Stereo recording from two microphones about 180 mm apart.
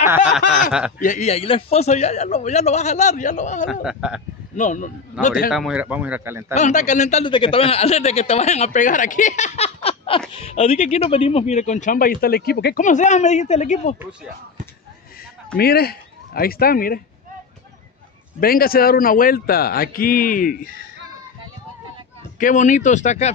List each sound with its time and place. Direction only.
0.0 s snicker: 10° right (ahead or behind)
0.5 s speech: centre (ahead or behind)
0.9 s a man's voice: 45° left (ahead or behind)
3.8 s speech: 5° right (ahead or behind)
4.6 s speech: 45° left (ahead or behind)
5.5 s speech: 5° right (ahead or behind)
6.5 s a man's voice: 40° left (ahead or behind); by 12.8 s 60° left (ahead or behind)
12.8 s a man's voice: 40° left (ahead or behind)
15.5 s speech: 60° left (ahead or behind)
18.4 s speech: 55° left (ahead or behind)
22.4 s speech: 45° left (ahead or behind)